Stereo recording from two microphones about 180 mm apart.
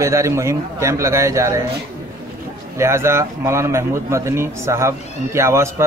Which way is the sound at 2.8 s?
15° right (ahead or behind).